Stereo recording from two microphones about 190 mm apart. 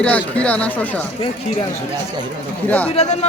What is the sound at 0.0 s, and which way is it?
Speech, 5° left (ahead or behind).